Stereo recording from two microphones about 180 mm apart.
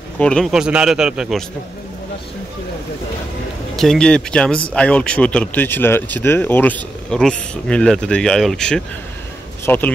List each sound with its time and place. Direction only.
0.2 s speech: 5° left (ahead or behind)
3.7 s speech: centre (ahead or behind)